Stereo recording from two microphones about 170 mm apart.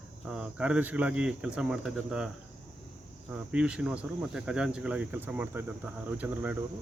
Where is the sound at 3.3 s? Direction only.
5° right (ahead or behind).